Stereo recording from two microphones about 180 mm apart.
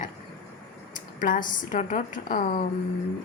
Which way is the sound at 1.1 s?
50° left (ahead or behind).